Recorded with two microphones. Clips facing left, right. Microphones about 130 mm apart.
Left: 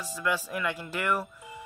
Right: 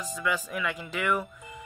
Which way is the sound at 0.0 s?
Centre (ahead or behind).